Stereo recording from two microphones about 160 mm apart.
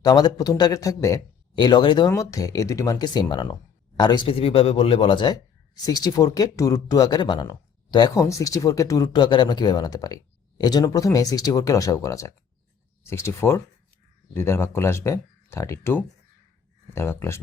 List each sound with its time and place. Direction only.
0.0 s speech: 25° left (ahead or behind)